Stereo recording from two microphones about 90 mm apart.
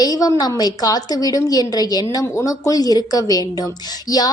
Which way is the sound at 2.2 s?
35° left (ahead or behind).